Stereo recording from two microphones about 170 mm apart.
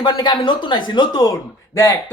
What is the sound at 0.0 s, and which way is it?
Speech, 25° left (ahead or behind).